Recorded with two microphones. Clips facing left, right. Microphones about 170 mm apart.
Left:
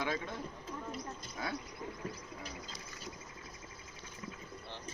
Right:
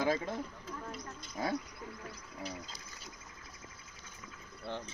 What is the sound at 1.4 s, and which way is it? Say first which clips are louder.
Speech: right 5 dB; 35° right (ahead or behind).